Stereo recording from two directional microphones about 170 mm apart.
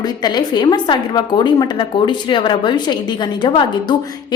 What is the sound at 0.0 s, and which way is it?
A woman's voice, 25° left (ahead or behind).